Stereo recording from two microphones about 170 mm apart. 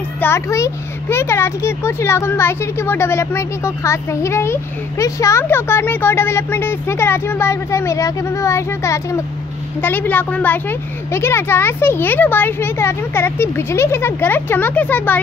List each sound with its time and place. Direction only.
0.2 s a child's voice: 15° left (ahead or behind)